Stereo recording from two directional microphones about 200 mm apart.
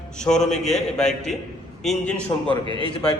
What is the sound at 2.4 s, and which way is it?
Speech, 25° right (ahead or behind).